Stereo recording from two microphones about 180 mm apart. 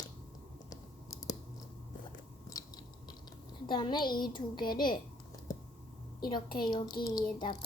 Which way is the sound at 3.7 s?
25° left (ahead or behind).